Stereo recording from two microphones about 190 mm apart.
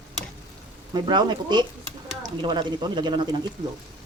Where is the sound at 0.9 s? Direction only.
25° right (ahead or behind).